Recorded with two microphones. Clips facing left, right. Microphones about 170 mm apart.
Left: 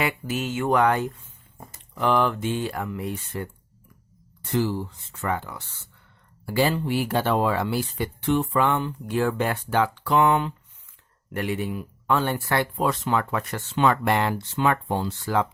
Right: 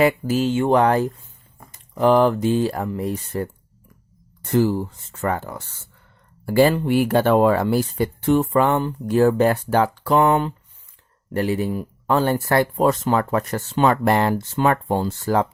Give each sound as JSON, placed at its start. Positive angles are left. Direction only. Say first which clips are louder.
{"t": 0.0, "sound": "speech", "louder": "right 9 dB", "side_deg": -35}
{"t": 1.6, "sound": "a sound", "louder": "left 3 dB", "side_deg": 20}
{"t": 2.0, "sound": "speech", "louder": "right 7 dB", "side_deg": -35}
{"t": 4.5, "sound": "speech", "louder": "right 6 dB", "side_deg": -45}